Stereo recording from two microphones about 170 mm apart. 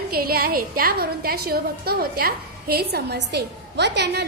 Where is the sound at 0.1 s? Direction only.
65° right (ahead or behind).